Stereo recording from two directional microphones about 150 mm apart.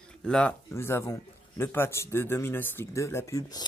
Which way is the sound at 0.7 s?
15° left (ahead or behind).